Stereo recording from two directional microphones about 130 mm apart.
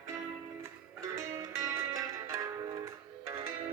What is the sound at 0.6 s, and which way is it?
Music, 25° right (ahead or behind).